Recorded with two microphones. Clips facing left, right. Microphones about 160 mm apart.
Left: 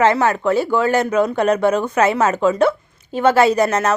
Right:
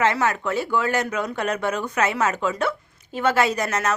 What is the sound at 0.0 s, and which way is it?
Speech, 30° left (ahead or behind).